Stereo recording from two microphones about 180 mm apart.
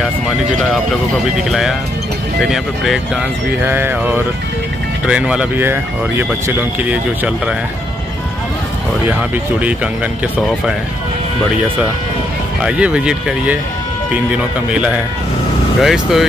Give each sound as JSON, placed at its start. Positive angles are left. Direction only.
{"t": 1.5, "sound": "speech", "side_deg": 0}
{"t": 9.0, "sound": "speech", "side_deg": -10}
{"t": 12.6, "sound": "speech", "side_deg": -5}